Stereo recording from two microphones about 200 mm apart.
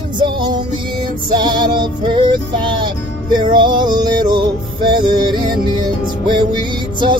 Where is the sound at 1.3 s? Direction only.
20° right (ahead or behind).